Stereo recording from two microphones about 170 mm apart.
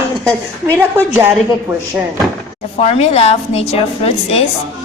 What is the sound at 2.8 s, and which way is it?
A woman's voice, 40° left (ahead or behind).